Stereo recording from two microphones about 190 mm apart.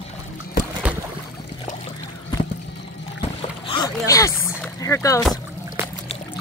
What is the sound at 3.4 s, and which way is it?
Boat, 30° left (ahead or behind).